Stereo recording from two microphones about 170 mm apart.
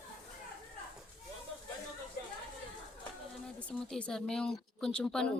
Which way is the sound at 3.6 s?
5° left (ahead or behind).